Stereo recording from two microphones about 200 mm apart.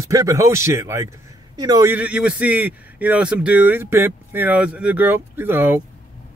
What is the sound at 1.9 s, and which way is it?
Speech, 5° right (ahead or behind).